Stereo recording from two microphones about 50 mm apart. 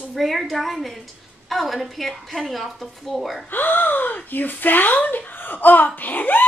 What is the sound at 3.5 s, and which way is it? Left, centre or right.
Speech, left.